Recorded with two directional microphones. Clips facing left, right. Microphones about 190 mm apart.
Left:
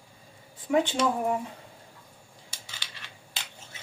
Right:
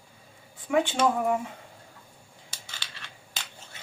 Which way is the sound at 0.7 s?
35° left (ahead or behind).